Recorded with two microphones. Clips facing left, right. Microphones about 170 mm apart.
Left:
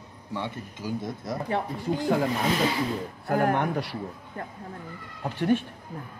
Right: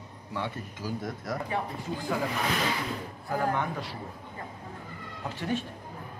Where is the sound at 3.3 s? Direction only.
70° left (ahead or behind).